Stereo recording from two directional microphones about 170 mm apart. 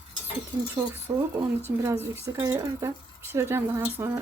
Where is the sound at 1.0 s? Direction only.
10° right (ahead or behind).